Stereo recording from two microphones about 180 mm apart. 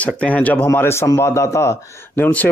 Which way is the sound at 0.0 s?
10° left (ahead or behind).